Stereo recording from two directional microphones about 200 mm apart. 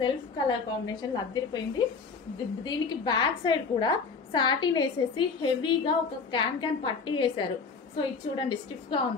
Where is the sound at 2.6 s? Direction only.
20° left (ahead or behind).